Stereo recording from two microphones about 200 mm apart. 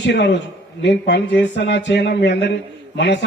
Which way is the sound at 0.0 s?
60° left (ahead or behind).